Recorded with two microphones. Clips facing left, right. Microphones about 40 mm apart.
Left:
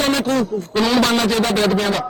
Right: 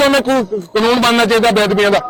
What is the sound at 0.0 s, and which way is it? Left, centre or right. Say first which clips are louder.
A man's voice: right 6 dB; right.